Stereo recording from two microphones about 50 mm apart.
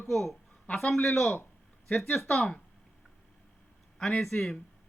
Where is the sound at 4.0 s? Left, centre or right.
Centre.